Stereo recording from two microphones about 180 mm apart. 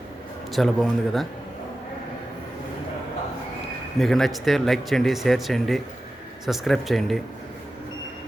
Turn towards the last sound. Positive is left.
turn(degrees=0)  # may be behind; listen again after turning